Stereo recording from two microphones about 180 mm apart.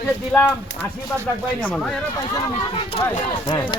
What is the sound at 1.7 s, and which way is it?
Speech, centre (ahead or behind).